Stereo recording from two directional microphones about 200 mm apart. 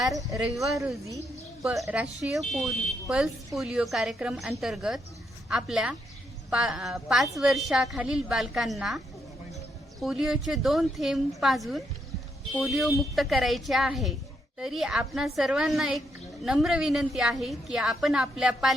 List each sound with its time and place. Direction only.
0.2 s speech: 15° right (ahead or behind)
0.5 s a woman's voice: centre (ahead or behind)
1.8 s a woman's voice: 5° right (ahead or behind)
10.0 s a woman's voice: centre (ahead or behind)